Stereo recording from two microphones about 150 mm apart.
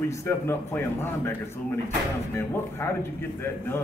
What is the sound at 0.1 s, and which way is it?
A man's voice, 20° left (ahead or behind).